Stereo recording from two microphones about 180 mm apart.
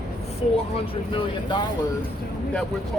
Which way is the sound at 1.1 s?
25° left (ahead or behind).